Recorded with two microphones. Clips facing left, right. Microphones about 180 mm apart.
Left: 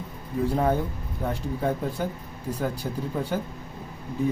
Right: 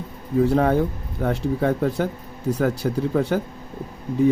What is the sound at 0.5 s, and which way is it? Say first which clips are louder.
Speech: right 5 dB; 75° right (ahead or behind).